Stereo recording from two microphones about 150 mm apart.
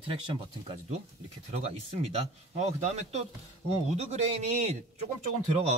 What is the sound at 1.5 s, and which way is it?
A man's voice, 45° right (ahead or behind).